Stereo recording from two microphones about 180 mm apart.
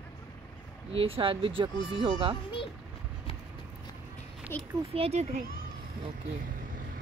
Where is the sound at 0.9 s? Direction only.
30° right (ahead or behind).